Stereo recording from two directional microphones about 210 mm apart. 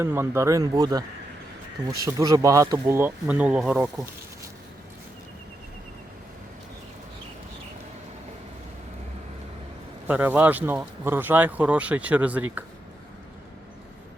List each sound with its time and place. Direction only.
0.0 s speech: 10° right (ahead or behind)
10.1 s speech: 10° right (ahead or behind)